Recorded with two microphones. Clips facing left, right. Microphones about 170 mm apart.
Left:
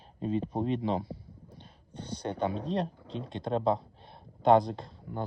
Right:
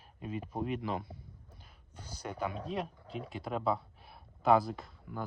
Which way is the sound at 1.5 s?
30° left (ahead or behind).